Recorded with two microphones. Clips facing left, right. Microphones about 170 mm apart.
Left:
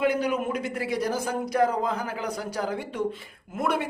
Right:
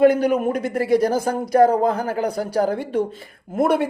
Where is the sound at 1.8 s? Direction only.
55° right (ahead or behind).